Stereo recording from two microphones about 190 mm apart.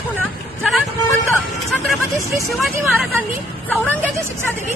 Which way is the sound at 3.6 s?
10° left (ahead or behind).